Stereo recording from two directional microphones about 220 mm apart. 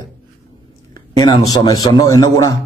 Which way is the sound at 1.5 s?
15° left (ahead or behind).